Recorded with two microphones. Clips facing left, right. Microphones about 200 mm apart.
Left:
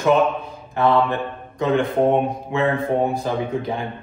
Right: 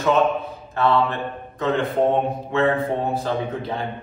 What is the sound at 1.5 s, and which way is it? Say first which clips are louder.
A man's voice: left 2 dB; 15° left (ahead or behind).